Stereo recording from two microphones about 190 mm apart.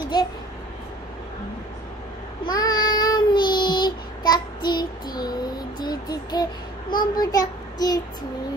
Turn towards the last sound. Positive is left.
turn(degrees=20)  # may be behind; listen again after turning